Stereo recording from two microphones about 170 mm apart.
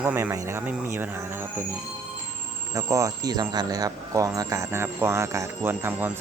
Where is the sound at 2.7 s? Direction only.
20° right (ahead or behind).